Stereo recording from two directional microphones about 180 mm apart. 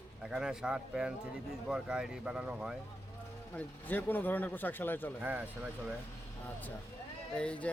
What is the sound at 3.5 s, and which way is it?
Speech, 10° left (ahead or behind).